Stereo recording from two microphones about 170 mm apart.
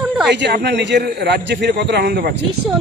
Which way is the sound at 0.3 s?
85° right.